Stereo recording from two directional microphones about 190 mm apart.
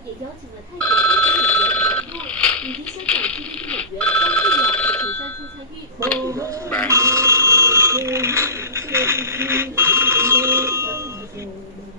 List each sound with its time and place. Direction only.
0.7 s telephone bell ringing: 5° left (ahead or behind)
6.2 s a sound: 15° right (ahead or behind)
6.9 s telephone bell ringing: 15° right (ahead or behind)